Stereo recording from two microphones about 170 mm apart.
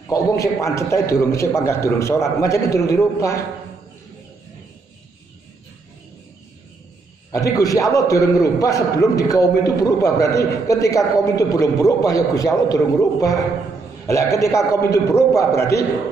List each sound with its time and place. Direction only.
0.1 s a man's voice: 20° left (ahead or behind)
7.2 s a man's voice: 20° left (ahead or behind)